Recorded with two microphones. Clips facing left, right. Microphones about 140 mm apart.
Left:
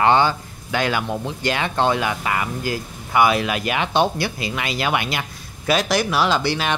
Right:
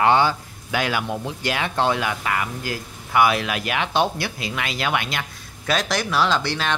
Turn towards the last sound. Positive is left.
turn(degrees=10)  # may be behind; listen again after turning